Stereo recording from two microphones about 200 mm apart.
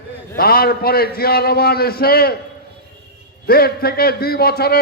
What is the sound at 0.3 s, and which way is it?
A man's voice, 50° left (ahead or behind).